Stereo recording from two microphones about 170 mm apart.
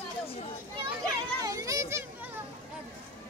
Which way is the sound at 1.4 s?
20° right (ahead or behind).